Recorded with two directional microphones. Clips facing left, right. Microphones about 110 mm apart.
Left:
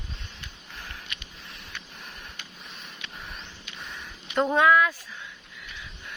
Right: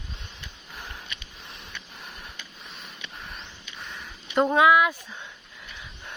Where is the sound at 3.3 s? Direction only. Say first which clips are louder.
Even; centre (ahead or behind).